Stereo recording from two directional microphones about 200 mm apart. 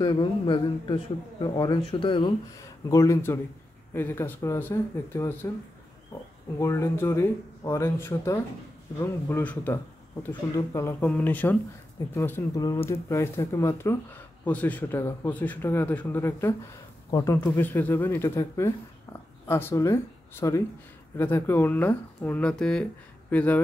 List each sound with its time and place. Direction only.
0.0 s a man's voice: 25° left (ahead or behind)
6.6 s speech: 15° left (ahead or behind)